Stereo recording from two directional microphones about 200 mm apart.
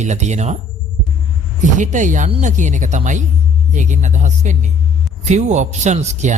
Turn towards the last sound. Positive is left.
turn(degrees=-35)  # may be behind; listen again after turning